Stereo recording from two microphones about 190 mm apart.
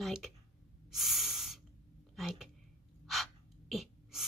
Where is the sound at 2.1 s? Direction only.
Centre (ahead or behind).